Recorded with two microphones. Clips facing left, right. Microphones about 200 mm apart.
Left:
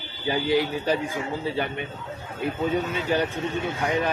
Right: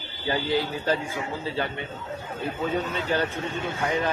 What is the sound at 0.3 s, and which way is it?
A man's voice, 15° left (ahead or behind).